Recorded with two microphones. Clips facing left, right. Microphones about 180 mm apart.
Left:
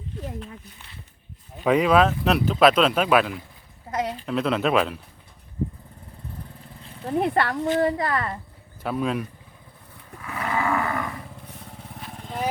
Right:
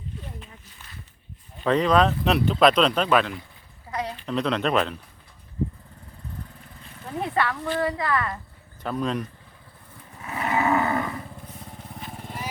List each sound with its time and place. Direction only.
1.5 s speech: 10° left (ahead or behind)
7.1 s speech: 50° left (ahead or behind)
7.5 s a woman's voice: 20° left (ahead or behind)
7.8 s speech: 45° left (ahead or behind)
8.8 s speech: 5° left (ahead or behind)
10.2 s cattle: 25° right (ahead or behind)
11.8 s vehicle: centre (ahead or behind)